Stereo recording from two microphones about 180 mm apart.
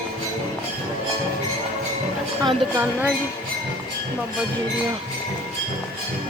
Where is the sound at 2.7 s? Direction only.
10° right (ahead or behind).